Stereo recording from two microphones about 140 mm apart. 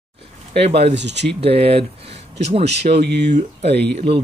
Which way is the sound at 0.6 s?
50° right (ahead or behind).